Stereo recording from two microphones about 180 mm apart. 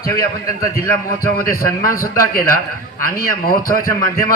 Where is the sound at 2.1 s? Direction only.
50° left (ahead or behind).